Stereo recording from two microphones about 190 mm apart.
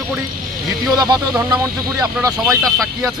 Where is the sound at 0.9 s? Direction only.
20° right (ahead or behind).